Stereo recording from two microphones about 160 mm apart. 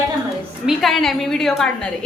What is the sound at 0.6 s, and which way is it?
A woman's voice, centre (ahead or behind).